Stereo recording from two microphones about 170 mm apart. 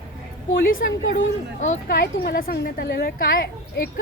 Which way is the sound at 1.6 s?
50° left (ahead or behind).